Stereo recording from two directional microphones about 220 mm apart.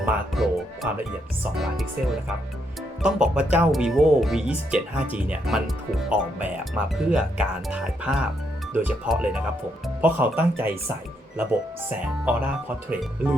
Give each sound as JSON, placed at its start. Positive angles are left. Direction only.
{"t": 0.0, "sound": "speech", "side_deg": -5}
{"t": 12.2, "sound": "speech", "side_deg": -5}